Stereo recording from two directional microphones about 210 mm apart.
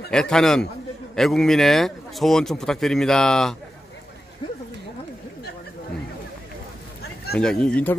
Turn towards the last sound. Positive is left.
turn(degrees=5)  # may be behind; listen again after turning